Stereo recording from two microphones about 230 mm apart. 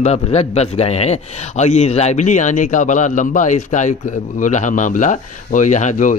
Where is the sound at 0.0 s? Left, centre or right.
Left.